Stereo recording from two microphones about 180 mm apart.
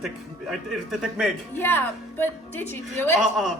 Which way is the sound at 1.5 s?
10° left (ahead or behind).